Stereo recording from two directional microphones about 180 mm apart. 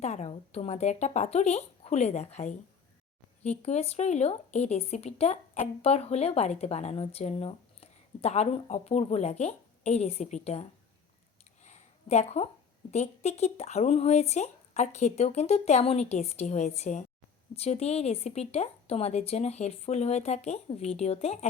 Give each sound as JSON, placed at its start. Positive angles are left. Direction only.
{"t": 0.0, "sound": "speech", "side_deg": 40}
{"t": 11.6, "sound": "a sound", "side_deg": 40}
{"t": 12.9, "sound": "speech", "side_deg": 40}